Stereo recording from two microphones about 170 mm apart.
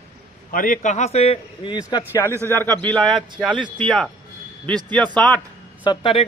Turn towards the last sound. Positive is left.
turn(degrees=30)  # may be behind; listen again after turning